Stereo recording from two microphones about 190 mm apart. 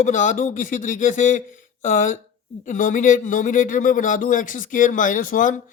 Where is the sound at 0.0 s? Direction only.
40° left (ahead or behind).